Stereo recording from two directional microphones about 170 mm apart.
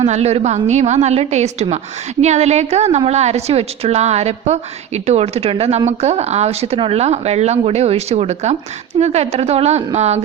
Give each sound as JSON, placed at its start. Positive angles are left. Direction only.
{"t": 0.0, "sound": "speech", "side_deg": -40}